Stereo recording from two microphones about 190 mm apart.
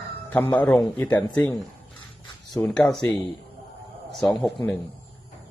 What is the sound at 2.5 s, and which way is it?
Speech, centre (ahead or behind).